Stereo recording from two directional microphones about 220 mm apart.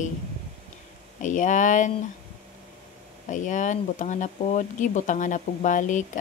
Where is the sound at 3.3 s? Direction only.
35° left (ahead or behind).